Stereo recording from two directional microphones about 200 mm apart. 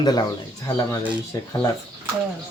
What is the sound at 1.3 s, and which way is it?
Speech, 15° left (ahead or behind).